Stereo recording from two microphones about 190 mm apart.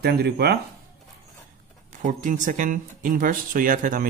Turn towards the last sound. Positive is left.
turn(degrees=-45)  # may be behind; listen again after turning